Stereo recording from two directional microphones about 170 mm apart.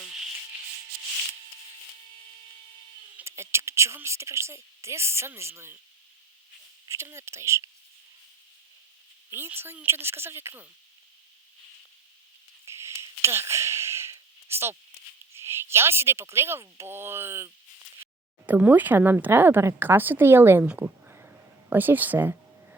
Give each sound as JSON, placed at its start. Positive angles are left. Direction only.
{"t": 3.2, "sound": "speech", "side_deg": -15}
{"t": 6.8, "sound": "speech", "side_deg": -15}
{"t": 9.3, "sound": "speech", "side_deg": -15}
{"t": 12.6, "sound": "a sound", "side_deg": -15}
{"t": 15.4, "sound": "speech", "side_deg": -15}